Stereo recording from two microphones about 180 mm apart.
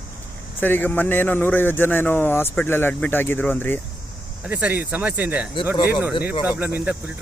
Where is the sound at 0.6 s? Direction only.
10° left (ahead or behind).